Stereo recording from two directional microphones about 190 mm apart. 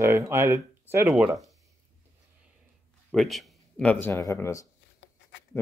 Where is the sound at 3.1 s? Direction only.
Centre (ahead or behind).